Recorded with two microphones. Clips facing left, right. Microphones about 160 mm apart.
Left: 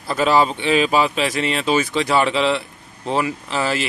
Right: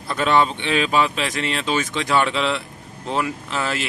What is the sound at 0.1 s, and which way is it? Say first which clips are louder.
Speech: left 2 dB; 5° left (ahead or behind).